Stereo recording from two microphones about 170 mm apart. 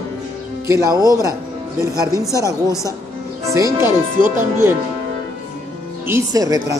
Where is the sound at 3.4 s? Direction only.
20° right (ahead or behind).